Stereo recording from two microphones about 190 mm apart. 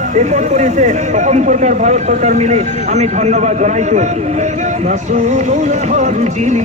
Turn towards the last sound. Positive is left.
turn(degrees=-40)  # may be behind; listen again after turning